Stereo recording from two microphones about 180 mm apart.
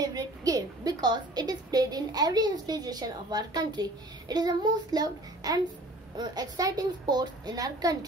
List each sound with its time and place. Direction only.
0.0 s a woman's voice: 20° right (ahead or behind)